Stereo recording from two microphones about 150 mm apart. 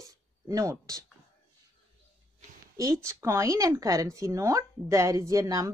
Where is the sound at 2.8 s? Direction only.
20° right (ahead or behind).